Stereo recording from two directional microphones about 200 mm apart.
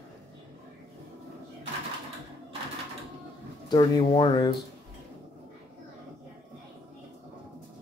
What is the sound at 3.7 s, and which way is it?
Speech, 25° left (ahead or behind).